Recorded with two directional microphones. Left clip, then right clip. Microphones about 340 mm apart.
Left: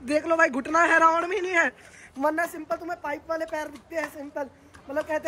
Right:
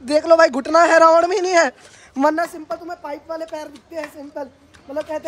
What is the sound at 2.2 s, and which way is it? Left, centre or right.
Speech, right.